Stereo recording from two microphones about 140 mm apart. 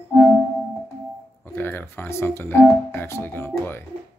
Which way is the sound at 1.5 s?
15° left (ahead or behind).